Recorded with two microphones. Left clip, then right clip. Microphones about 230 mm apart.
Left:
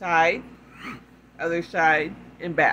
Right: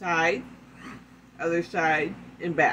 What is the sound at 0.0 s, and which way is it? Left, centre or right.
Speech, centre.